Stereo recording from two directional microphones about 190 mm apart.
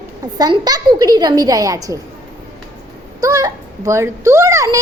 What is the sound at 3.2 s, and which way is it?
A woman's voice, 20° right (ahead or behind).